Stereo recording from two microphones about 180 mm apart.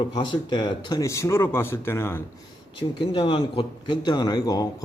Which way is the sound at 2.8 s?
30° left (ahead or behind).